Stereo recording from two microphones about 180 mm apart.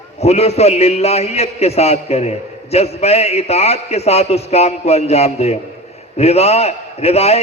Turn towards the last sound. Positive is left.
turn(degrees=35)  # may be behind; listen again after turning